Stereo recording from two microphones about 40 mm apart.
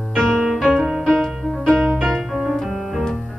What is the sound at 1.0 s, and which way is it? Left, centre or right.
Music, centre.